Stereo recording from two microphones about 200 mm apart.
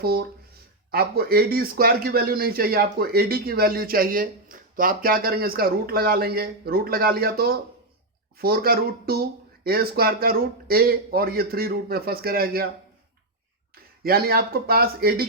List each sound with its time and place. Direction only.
0.0 s a man's voice: 50° right (ahead or behind)
14.0 s a man's voice: 50° right (ahead or behind)